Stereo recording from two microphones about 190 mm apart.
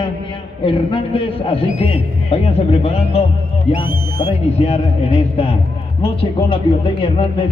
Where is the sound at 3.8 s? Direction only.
50° right (ahead or behind).